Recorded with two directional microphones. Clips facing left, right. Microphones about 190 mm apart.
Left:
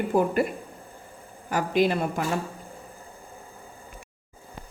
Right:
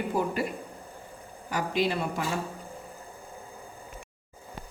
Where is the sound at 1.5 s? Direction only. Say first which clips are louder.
Left 5 dB; 50° left (ahead or behind).